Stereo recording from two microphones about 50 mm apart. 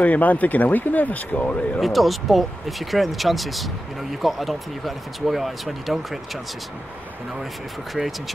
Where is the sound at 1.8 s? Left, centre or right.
Centre.